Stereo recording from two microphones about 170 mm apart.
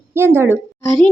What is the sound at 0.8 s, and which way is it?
Speech, 20° left (ahead or behind).